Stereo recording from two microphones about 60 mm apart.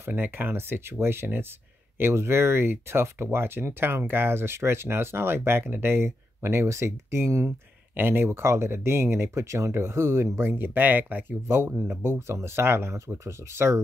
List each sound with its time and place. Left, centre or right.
0.1 s speech: right
7.9 s speech: right